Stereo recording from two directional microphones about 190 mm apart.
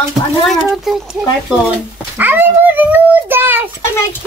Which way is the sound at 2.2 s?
10° right (ahead or behind).